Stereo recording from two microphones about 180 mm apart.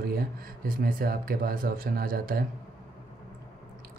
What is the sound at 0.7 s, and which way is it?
Speech, 55° right (ahead or behind).